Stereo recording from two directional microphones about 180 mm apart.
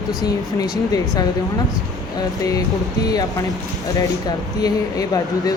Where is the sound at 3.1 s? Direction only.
20° left (ahead or behind).